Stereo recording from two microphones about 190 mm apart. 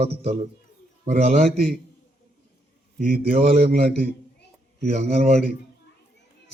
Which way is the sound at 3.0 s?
35° right (ahead or behind).